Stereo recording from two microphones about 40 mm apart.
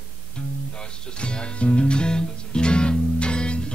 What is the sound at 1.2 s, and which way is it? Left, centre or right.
Music, left.